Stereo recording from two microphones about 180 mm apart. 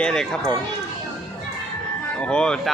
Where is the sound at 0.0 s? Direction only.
5° left (ahead or behind).